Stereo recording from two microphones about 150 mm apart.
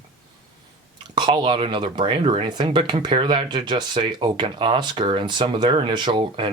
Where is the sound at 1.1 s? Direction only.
30° right (ahead or behind).